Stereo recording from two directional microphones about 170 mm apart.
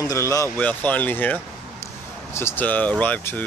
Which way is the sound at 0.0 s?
20° left (ahead or behind).